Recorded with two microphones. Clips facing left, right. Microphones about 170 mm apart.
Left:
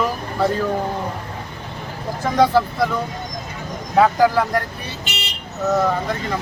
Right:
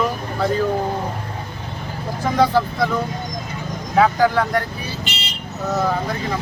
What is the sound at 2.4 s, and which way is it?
Speech, centre (ahead or behind).